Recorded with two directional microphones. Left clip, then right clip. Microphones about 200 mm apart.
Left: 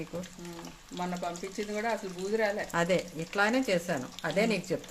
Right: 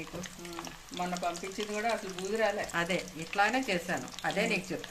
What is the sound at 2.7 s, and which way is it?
Speech, 55° left (ahead or behind).